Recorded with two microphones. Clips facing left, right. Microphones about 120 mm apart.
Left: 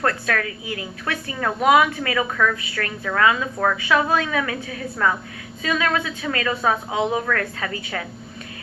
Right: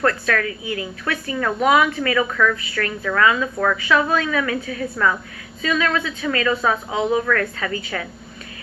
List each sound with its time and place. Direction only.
0.0 s a woman's voice: 30° left (ahead or behind)